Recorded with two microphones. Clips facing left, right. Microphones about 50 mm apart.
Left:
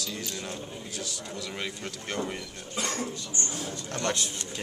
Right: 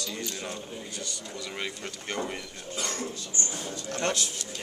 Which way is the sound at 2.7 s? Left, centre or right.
Left.